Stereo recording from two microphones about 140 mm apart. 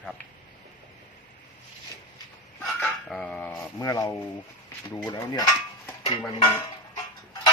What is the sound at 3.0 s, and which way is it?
Speech, 5° left (ahead or behind).